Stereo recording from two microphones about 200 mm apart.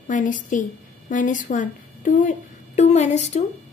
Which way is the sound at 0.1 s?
40° left (ahead or behind).